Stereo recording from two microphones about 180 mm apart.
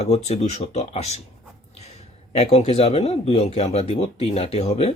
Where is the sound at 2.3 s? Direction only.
35° left (ahead or behind).